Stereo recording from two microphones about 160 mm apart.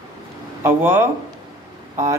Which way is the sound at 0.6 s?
15° right (ahead or behind).